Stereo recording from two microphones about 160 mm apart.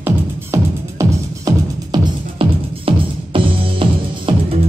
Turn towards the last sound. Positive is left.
turn(degrees=-35)  # may be behind; listen again after turning